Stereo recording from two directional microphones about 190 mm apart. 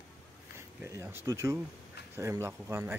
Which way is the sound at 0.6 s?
15° right (ahead or behind).